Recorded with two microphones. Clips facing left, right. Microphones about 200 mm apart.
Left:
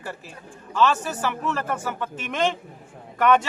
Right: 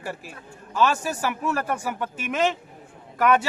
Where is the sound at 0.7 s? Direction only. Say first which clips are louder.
Left 1 dB; 10° right (ahead or behind).